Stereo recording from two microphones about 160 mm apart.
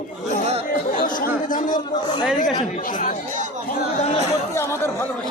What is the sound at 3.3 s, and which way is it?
Chatter, 50° right (ahead or behind).